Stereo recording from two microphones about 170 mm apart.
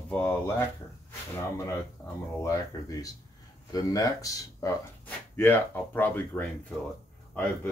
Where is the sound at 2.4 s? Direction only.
20° left (ahead or behind).